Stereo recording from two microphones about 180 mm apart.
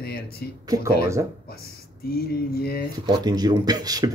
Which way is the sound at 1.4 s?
60° left (ahead or behind).